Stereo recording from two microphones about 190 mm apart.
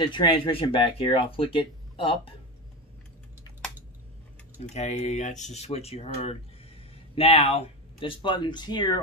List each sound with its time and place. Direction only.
0.0 s speech: 25° left (ahead or behind)
4.7 s speech: 35° left (ahead or behind)